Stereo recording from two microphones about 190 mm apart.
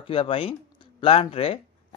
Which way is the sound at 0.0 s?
30° left (ahead or behind).